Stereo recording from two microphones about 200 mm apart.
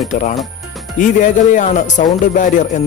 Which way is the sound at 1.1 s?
40° left (ahead or behind).